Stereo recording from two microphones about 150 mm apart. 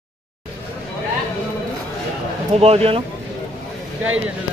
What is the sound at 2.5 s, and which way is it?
Speech, 40° right (ahead or behind).